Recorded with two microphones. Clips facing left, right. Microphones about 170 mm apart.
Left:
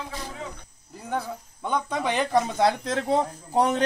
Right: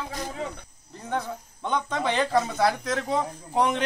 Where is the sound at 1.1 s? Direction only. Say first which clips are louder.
Even; 10° left (ahead or behind).